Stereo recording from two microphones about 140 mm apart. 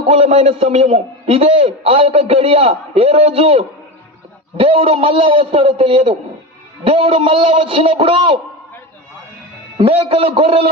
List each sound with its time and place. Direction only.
0.1 s a man's voice: 45° right (ahead or behind)
9.7 s a man's voice: 40° right (ahead or behind)